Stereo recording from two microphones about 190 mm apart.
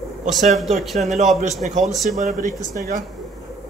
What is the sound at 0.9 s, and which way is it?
Speech, 40° right (ahead or behind).